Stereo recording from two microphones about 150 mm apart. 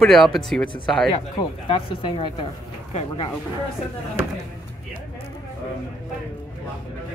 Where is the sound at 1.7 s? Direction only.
35° left (ahead or behind).